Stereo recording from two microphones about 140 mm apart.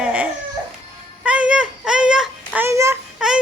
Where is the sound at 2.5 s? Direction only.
20° right (ahead or behind).